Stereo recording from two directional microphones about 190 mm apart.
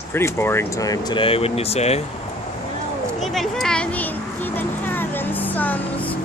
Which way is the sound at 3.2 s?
Centre (ahead or behind).